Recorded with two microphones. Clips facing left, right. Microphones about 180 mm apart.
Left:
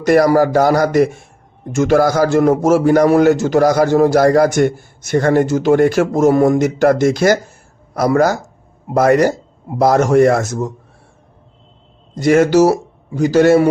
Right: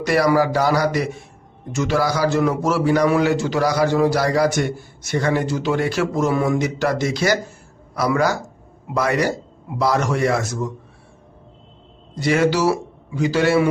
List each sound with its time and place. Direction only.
0.0 s a man's voice: 45° left (ahead or behind)
12.1 s a man's voice: 45° left (ahead or behind)